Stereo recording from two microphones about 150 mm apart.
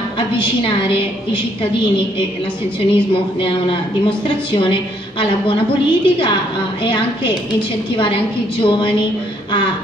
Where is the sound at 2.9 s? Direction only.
35° left (ahead or behind).